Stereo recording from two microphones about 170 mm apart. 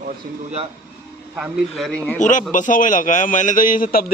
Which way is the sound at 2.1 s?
45° left (ahead or behind).